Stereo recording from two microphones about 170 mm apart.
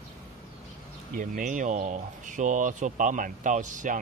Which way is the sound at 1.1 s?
55° right (ahead or behind).